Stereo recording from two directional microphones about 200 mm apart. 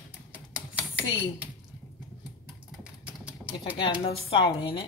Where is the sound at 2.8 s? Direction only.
5° right (ahead or behind).